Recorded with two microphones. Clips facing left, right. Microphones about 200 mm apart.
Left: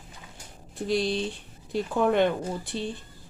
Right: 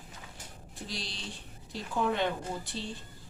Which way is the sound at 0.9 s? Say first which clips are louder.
Left 17 dB; 55° left (ahead or behind).